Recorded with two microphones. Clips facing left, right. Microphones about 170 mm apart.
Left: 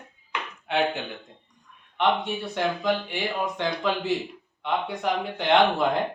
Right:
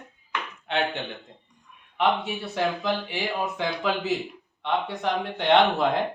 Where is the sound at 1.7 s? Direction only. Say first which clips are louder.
Even; 5° right (ahead or behind).